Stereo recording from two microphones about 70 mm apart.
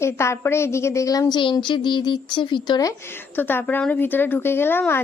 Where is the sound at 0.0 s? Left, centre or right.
Left.